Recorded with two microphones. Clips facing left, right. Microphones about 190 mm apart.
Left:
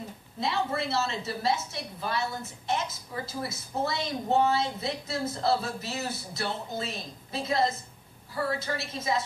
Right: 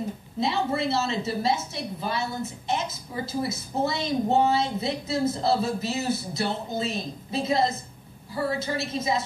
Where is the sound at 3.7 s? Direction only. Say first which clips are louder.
Right 5 dB; 20° right (ahead or behind).